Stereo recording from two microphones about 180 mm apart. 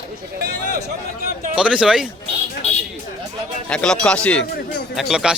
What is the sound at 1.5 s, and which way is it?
Speech, 5° right (ahead or behind).